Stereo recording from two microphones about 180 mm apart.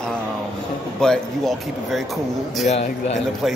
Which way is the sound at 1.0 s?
Centre (ahead or behind).